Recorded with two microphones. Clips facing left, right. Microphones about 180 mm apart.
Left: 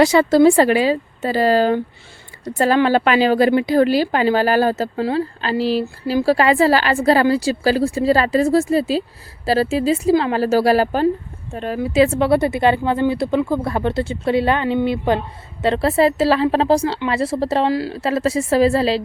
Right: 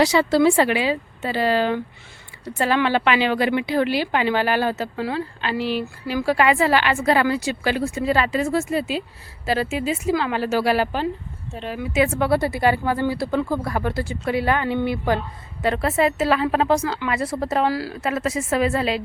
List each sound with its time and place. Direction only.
0.0 s a woman's voice: 50° left (ahead or behind)
11.9 s a woman's voice: 25° left (ahead or behind)